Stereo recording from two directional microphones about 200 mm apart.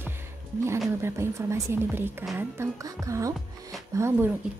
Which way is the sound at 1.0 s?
15° right (ahead or behind).